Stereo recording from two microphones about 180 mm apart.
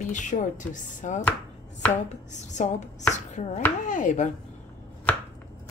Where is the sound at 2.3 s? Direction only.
40° left (ahead or behind).